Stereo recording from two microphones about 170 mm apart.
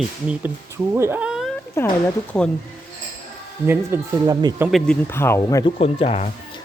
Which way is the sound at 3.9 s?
15° right (ahead or behind).